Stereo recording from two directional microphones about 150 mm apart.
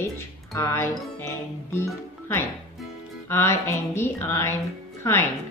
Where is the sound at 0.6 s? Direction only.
20° left (ahead or behind).